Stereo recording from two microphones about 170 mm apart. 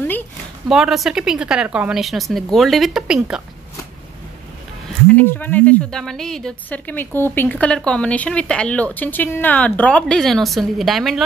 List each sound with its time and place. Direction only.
0.7 s a woman's voice: 5° right (ahead or behind)
5.0 s a woman's voice: 10° left (ahead or behind)